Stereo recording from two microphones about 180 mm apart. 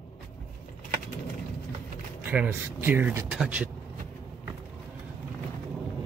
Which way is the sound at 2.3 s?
10° right (ahead or behind).